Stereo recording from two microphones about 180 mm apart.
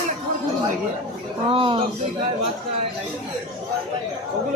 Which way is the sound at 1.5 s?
30° right (ahead or behind).